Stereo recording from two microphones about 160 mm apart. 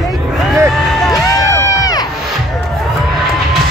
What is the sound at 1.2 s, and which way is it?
Crowd, 20° left (ahead or behind).